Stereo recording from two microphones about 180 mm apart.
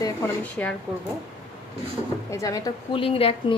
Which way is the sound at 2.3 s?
15° left (ahead or behind).